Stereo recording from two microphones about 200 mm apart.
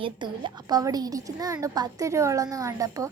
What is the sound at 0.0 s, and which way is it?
A woman's voice, 25° right (ahead or behind).